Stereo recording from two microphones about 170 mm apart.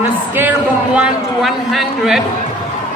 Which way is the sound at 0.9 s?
5° right (ahead or behind).